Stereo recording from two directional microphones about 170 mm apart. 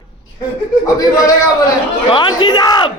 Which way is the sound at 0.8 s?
20° left (ahead or behind).